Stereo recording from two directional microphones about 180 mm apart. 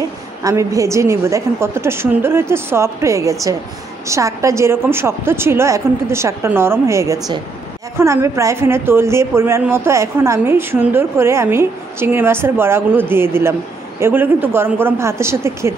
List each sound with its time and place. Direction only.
0.4 s a woman's voice: 20° right (ahead or behind)